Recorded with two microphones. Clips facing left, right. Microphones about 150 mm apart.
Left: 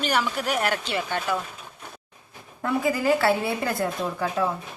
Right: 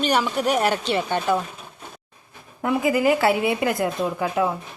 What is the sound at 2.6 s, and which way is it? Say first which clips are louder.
Speech: right 4 dB; 15° right (ahead or behind).